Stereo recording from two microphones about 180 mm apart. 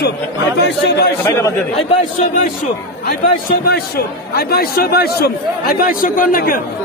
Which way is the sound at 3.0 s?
55° left (ahead or behind).